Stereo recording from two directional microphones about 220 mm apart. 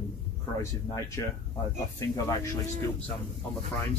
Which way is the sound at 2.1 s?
15° left (ahead or behind).